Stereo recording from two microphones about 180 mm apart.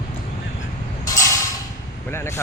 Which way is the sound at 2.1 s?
15° left (ahead or behind).